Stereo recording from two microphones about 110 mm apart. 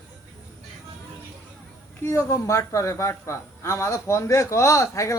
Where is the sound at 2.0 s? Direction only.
25° left (ahead or behind).